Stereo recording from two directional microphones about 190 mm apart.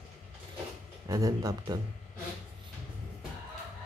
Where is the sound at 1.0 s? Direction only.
20° right (ahead or behind).